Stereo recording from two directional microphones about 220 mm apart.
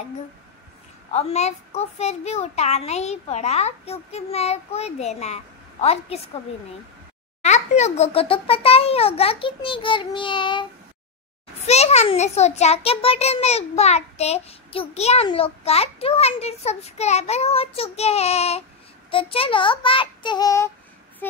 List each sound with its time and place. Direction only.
1.1 s a child's voice: 30° left (ahead or behind)
7.4 s a child's voice: 30° left (ahead or behind); by 21.4 s 10° left (ahead or behind)